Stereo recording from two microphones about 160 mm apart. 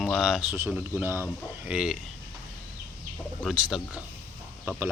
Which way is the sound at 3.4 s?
Centre (ahead or behind).